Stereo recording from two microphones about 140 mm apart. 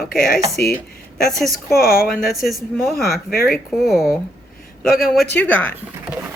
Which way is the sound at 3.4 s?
Centre (ahead or behind).